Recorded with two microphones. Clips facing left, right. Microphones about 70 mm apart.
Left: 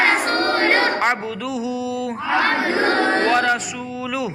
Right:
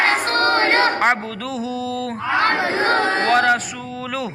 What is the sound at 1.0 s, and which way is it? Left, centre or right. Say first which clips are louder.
Speech: right 2 dB; right.